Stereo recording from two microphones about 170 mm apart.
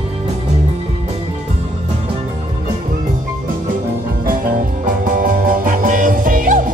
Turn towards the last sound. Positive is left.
turn(degrees=-50)  # may be behind; listen again after turning